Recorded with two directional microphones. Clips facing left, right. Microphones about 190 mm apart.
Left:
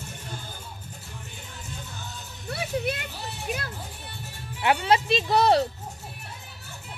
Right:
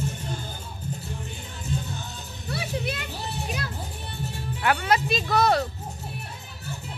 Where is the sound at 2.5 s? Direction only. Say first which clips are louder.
Left 2 dB; 50° left (ahead or behind).